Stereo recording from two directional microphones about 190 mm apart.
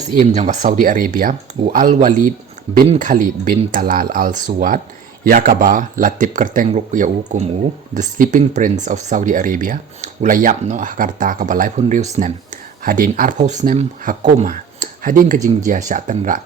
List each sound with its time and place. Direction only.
0.0 s speech: 40° right (ahead or behind)